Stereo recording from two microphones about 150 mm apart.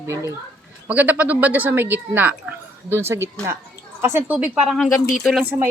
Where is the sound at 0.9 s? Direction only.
10° right (ahead or behind).